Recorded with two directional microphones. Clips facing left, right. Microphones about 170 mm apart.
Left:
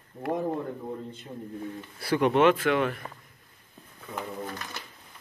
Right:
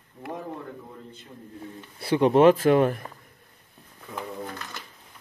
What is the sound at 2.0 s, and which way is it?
Speech, 30° right (ahead or behind).